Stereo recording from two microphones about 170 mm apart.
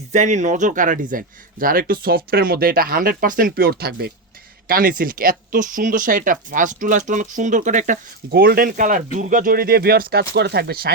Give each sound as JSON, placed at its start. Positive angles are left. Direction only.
{"t": 0.1, "sound": "speech", "side_deg": -45}
{"t": 4.7, "sound": "speech", "side_deg": -55}
{"t": 8.3, "sound": "speech", "side_deg": -60}